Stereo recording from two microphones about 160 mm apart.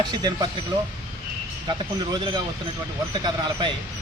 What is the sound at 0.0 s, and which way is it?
Speech, 25° right (ahead or behind).